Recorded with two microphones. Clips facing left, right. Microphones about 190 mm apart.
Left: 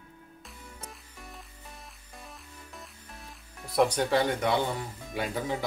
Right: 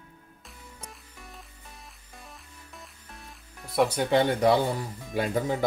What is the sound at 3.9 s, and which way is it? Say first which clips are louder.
Speech: right 3 dB; 20° right (ahead or behind).